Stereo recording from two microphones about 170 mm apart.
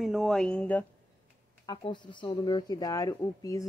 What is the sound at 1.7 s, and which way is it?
A woman's voice, 25° left (ahead or behind).